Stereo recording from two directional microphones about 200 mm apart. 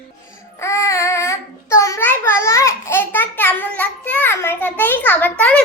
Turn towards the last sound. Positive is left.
turn(degrees=5)  # may be behind; listen again after turning